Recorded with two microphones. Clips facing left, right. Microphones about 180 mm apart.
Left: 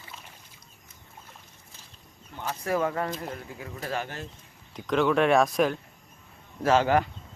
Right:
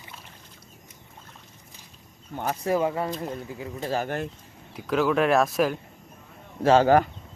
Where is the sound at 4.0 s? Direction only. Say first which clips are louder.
Right 6 dB; 55° right (ahead or behind).